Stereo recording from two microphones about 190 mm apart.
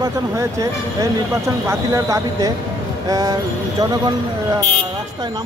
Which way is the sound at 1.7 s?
15° right (ahead or behind).